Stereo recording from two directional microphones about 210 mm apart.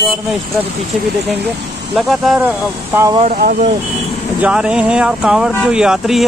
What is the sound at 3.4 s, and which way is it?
Speech, 45° right (ahead or behind).